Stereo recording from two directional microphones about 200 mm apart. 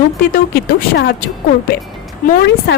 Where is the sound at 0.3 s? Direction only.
50° left (ahead or behind).